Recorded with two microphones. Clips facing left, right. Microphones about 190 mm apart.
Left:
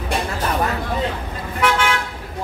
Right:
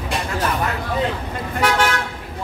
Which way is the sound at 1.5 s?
40° right (ahead or behind).